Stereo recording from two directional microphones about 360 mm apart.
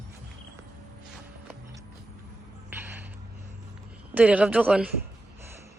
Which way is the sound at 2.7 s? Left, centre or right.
Centre.